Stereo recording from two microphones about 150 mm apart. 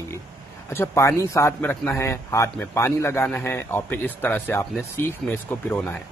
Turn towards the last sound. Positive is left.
turn(degrees=10)  # may be behind; listen again after turning